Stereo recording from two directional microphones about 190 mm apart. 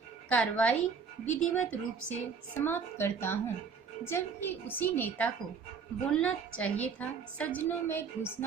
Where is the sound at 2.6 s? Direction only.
10° left (ahead or behind).